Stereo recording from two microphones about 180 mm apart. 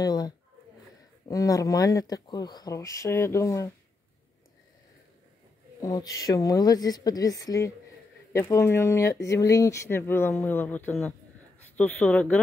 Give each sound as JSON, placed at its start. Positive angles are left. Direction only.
{"t": 0.0, "sound": "speech", "side_deg": 20}
{"t": 5.8, "sound": "speech", "side_deg": 20}